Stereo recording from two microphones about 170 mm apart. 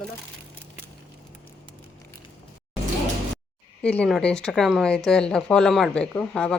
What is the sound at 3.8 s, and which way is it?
Speech, 5° left (ahead or behind).